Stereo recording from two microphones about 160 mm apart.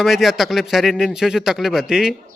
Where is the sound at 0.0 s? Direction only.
Centre (ahead or behind).